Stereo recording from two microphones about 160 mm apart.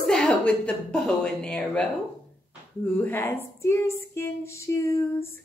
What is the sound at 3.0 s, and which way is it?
Speech, 15° left (ahead or behind).